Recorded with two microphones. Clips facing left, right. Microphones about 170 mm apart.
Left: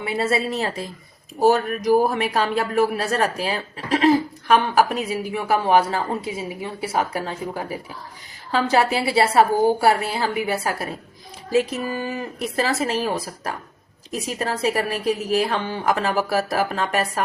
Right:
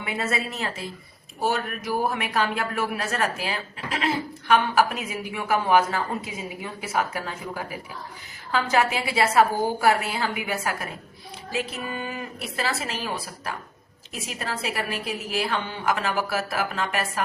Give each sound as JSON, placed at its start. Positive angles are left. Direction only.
{"t": 0.0, "sound": "speech", "side_deg": 35}